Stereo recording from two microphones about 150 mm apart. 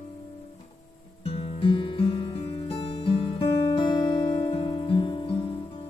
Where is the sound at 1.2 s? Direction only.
40° left (ahead or behind).